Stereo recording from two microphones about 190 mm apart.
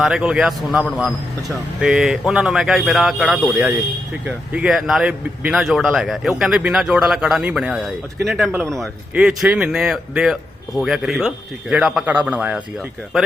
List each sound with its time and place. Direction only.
0.0 s a man's voice: 5° right (ahead or behind)